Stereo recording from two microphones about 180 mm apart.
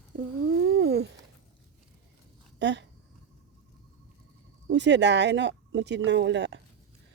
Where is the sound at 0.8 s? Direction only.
65° right (ahead or behind).